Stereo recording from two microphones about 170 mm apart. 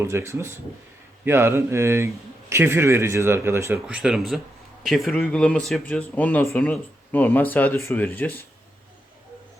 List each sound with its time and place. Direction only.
0.0 s speech: 15° right (ahead or behind)
3.8 s speech: 5° right (ahead or behind); by 8.4 s 10° left (ahead or behind)